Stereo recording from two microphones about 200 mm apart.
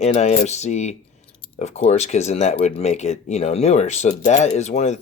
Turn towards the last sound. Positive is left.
turn(degrees=35)  # may be behind; listen again after turning